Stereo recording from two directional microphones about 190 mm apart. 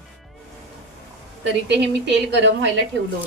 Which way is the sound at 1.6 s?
70° right (ahead or behind).